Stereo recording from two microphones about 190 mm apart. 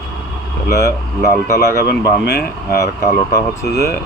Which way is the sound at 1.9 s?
55° left (ahead or behind).